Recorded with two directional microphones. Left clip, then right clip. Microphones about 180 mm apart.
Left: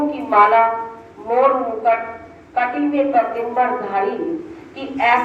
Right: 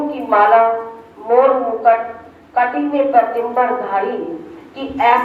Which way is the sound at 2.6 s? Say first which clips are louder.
Right 3 dB; 20° right (ahead or behind).